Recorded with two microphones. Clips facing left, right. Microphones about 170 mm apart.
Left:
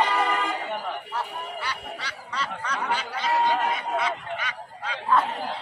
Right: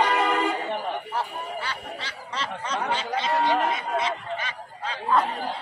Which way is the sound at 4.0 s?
35° right (ahead or behind).